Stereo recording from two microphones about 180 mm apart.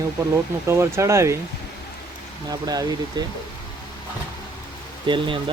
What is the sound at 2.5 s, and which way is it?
Speech, 20° right (ahead or behind).